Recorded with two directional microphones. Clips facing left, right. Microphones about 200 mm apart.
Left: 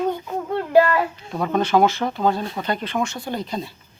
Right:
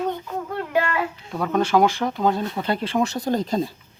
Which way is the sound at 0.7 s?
40° left (ahead or behind).